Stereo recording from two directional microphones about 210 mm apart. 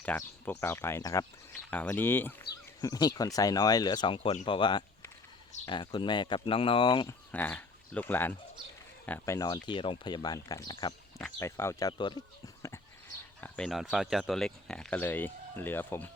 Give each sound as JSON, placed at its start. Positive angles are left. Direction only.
{"t": 0.0, "sound": "speech", "side_deg": 5}
{"t": 7.3, "sound": "speech", "side_deg": 10}
{"t": 13.4, "sound": "speech", "side_deg": 0}